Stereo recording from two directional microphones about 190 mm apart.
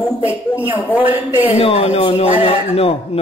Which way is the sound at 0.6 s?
10° right (ahead or behind).